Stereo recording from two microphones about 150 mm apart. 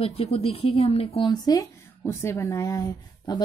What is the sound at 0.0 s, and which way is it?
A woman's voice, 40° left (ahead or behind).